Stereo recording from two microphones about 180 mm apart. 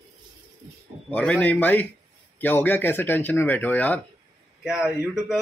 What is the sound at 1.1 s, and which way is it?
Speech, 5° left (ahead or behind).